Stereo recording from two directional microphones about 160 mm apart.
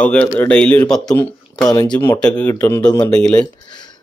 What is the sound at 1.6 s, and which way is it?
Speech, 25° left (ahead or behind).